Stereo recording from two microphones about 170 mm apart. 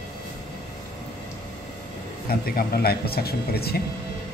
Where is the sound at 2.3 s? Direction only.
60° left (ahead or behind).